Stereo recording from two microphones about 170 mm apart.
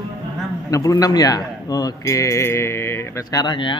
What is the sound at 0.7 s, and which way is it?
Speech, 20° left (ahead or behind).